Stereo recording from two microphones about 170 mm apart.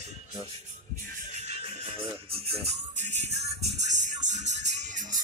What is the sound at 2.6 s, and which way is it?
Music, 40° right (ahead or behind).